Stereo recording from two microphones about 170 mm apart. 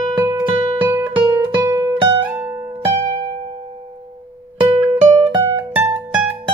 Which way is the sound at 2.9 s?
30° right (ahead or behind).